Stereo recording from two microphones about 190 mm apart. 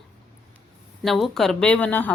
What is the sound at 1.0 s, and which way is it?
Speech, centre (ahead or behind).